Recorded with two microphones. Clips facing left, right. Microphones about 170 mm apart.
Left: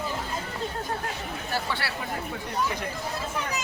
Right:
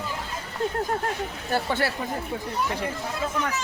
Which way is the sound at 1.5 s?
50° right (ahead or behind).